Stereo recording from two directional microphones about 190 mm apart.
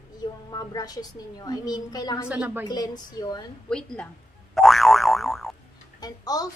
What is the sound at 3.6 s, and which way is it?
Speech, 5° left (ahead or behind).